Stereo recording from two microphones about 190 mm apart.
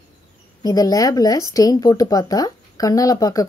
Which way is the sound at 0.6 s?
20° left (ahead or behind).